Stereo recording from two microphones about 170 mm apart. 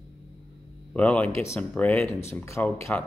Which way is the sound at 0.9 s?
10° left (ahead or behind).